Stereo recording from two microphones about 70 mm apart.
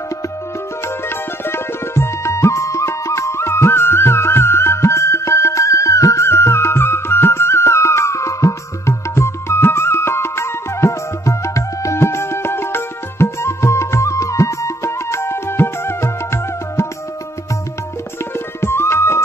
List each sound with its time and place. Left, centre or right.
0.8 s music: left
18.3 s music: left